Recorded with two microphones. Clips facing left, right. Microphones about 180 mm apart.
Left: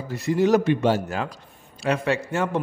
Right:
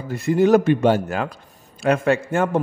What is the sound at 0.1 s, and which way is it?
A man's voice, 50° right (ahead or behind).